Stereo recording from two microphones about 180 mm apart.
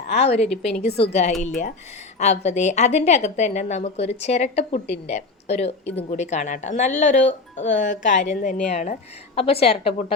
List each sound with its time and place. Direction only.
0.1 s a woman's voice: 35° left (ahead or behind)
2.1 s a woman's voice: 40° left (ahead or behind)